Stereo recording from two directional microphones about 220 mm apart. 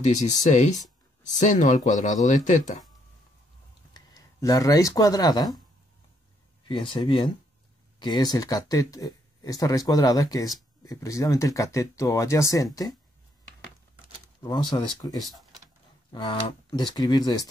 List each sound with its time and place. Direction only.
0.0 s speech: 30° left (ahead or behind)
3.9 s speech: 15° left (ahead or behind)
6.7 s speech: 25° left (ahead or behind)
14.4 s speech: 20° left (ahead or behind)